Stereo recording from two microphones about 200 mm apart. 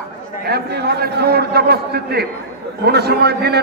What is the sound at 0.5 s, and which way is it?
A man's voice, 55° right (ahead or behind).